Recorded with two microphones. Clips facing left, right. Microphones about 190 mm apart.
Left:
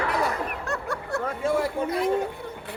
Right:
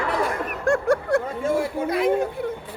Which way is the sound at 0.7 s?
50° right (ahead or behind).